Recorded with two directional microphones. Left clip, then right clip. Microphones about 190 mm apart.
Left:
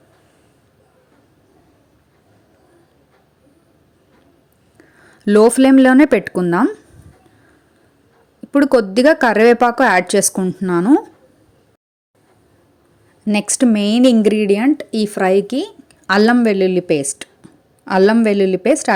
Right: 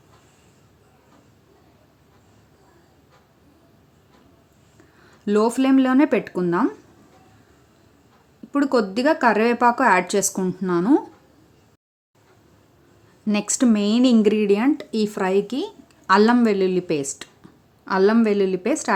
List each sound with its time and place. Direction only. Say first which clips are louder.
4.8 s speech: left 8 dB; 30° left (ahead or behind)
8.5 s speech: left 8 dB; 30° left (ahead or behind)
13.3 s speech: left 5 dB; 20° left (ahead or behind)